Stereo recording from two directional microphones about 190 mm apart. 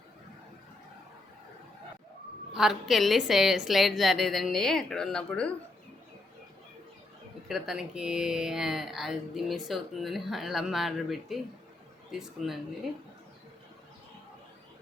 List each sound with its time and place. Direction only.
2.5 s speech: centre (ahead or behind)
7.4 s speech: centre (ahead or behind)